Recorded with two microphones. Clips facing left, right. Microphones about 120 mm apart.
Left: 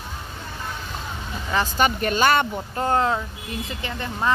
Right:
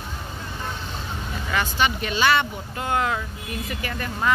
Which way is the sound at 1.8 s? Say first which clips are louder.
Left 3 dB; 45° left (ahead or behind).